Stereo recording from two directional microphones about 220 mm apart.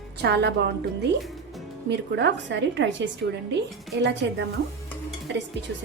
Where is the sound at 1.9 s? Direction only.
50° right (ahead or behind).